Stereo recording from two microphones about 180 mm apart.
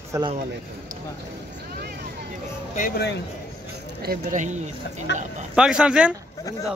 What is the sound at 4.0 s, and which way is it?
Speech, 50° right (ahead or behind).